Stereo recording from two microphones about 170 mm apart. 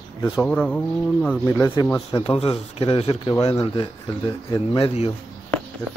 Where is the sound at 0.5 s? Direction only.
10° left (ahead or behind).